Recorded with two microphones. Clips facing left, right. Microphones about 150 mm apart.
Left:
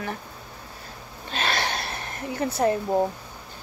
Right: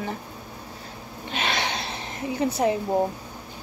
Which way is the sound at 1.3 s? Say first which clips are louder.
Even; 20° right (ahead or behind).